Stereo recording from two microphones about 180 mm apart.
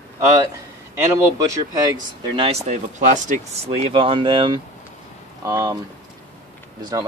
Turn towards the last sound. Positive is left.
turn(degrees=-20)  # may be behind; listen again after turning